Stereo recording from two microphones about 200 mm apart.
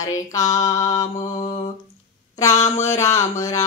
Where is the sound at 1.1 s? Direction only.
35° left (ahead or behind).